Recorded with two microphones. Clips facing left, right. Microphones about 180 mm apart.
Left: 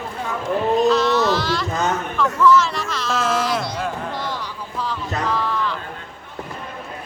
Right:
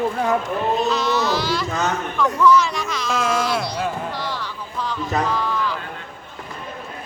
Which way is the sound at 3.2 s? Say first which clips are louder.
Even; 5° left (ahead or behind).